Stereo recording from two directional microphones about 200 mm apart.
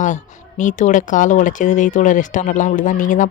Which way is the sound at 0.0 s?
40° left (ahead or behind).